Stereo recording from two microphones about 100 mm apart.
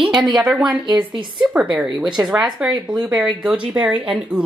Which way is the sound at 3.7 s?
10° right (ahead or behind).